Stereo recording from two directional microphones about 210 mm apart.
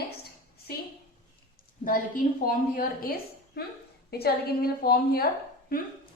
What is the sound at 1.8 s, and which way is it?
A woman's voice, 40° left (ahead or behind).